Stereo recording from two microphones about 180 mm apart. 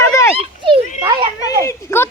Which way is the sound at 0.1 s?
15° left (ahead or behind).